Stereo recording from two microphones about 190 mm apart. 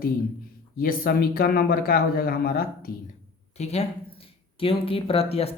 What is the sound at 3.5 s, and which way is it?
Speech, 35° left (ahead or behind).